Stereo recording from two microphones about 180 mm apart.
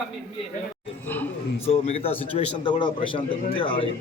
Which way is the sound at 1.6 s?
35° left (ahead or behind).